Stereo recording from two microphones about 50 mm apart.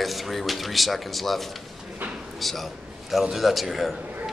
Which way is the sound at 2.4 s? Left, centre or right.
Centre.